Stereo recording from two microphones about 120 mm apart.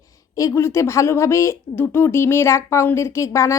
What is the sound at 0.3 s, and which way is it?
A woman's voice, 25° left (ahead or behind).